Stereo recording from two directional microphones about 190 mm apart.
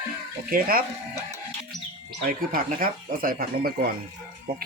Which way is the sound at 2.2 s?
50° right (ahead or behind).